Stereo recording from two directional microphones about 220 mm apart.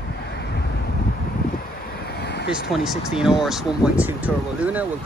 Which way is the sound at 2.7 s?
Centre (ahead or behind).